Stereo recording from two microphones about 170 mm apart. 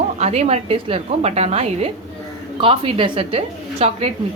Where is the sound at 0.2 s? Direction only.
40° right (ahead or behind).